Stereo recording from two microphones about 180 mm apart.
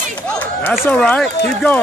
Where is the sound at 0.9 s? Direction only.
5° left (ahead or behind).